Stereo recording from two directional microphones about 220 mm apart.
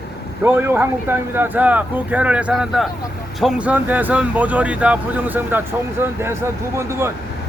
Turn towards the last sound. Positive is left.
turn(degrees=-10)  # may be behind; listen again after turning